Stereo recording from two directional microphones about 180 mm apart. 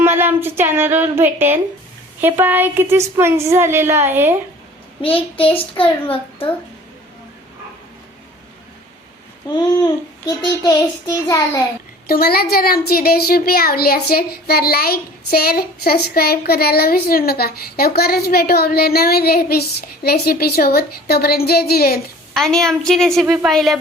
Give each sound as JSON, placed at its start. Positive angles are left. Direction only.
{"t": 0.0, "sound": "a woman's voice", "side_deg": -10}
{"t": 5.0, "sound": "a child's voice", "side_deg": 30}
{"t": 9.6, "sound": "a child's voice", "side_deg": 20}
{"t": 12.0, "sound": "speech", "side_deg": 55}
{"t": 22.4, "sound": "a woman's voice", "side_deg": 0}